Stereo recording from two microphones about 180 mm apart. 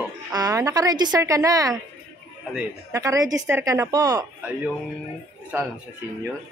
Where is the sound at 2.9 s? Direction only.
20° right (ahead or behind).